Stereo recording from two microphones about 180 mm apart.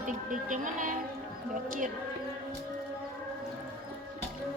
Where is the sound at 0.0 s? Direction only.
45° right (ahead or behind).